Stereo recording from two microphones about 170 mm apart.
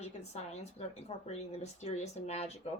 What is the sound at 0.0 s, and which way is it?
Speech, 40° left (ahead or behind).